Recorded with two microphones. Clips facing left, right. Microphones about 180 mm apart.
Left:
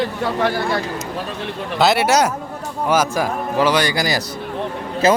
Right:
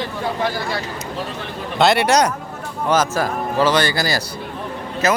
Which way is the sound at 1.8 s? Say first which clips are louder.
Even; 5° left (ahead or behind).